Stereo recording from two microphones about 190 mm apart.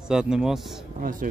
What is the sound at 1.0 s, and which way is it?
Speech, 45° right (ahead or behind).